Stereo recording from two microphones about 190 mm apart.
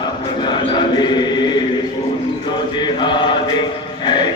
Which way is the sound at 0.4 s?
25° left (ahead or behind).